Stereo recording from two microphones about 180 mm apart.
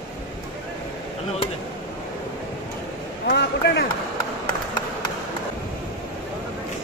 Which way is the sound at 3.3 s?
65° left (ahead or behind).